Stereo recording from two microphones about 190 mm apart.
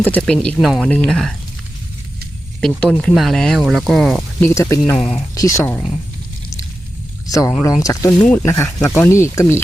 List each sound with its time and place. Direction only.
0.0 s speech: 5° left (ahead or behind)
2.6 s speech: 5° left (ahead or behind)
7.3 s speech: 20° left (ahead or behind)